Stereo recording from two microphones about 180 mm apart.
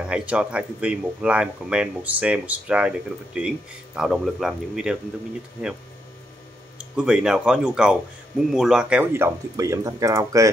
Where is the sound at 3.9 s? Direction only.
Centre (ahead or behind).